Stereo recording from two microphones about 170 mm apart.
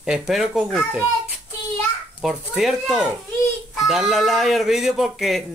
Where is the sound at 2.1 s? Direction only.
Centre (ahead or behind).